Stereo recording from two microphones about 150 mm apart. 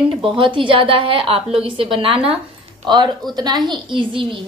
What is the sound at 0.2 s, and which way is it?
A woman's voice, 35° right (ahead or behind).